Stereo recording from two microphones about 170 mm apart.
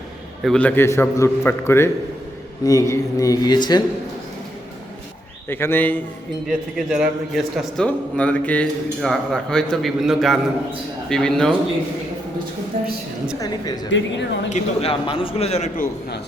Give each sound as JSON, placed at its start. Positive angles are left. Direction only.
{"t": 0.4, "sound": "a man's voice", "side_deg": 5}
{"t": 5.5, "sound": "a man's voice", "side_deg": 15}
{"t": 6.5, "sound": "speech", "side_deg": -5}
{"t": 12.7, "sound": "a woman's voice", "side_deg": -55}
{"t": 13.9, "sound": "speech", "side_deg": 90}
{"t": 14.5, "sound": "a man's voice", "side_deg": 35}